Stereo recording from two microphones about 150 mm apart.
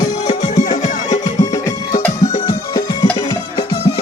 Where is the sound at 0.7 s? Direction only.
25° left (ahead or behind).